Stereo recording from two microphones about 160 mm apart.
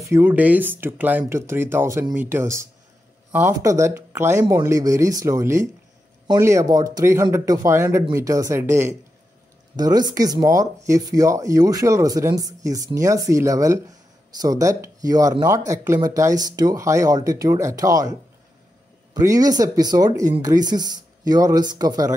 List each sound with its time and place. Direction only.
0.1 s speech: 10° right (ahead or behind)
19.1 s speech: 20° right (ahead or behind)